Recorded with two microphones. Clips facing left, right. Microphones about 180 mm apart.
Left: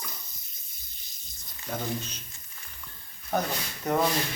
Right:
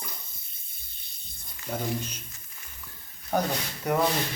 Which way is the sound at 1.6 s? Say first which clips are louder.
Right 2 dB; 10° right (ahead or behind).